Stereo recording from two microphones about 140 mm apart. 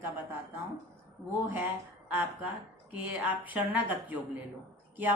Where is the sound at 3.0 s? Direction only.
10° right (ahead or behind).